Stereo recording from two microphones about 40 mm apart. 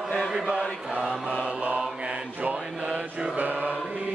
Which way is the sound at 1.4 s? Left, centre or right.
Right.